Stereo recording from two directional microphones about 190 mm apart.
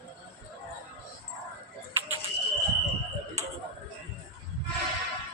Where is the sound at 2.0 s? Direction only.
10° right (ahead or behind).